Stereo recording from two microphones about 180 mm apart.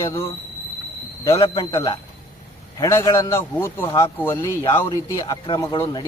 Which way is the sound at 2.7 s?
15° left (ahead or behind).